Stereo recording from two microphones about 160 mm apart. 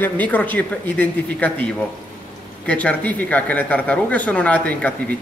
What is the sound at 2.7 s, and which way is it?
Speech, 10° left (ahead or behind).